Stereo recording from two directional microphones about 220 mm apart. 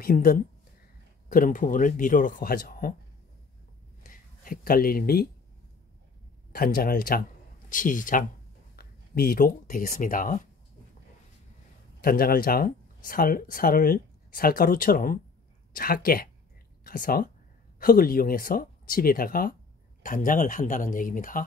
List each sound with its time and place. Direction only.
0.0 s speech: 40° left (ahead or behind)
4.0 s a sound: 40° left (ahead or behind)
6.5 s speech: 45° left (ahead or behind)
12.0 s speech: 40° left (ahead or behind)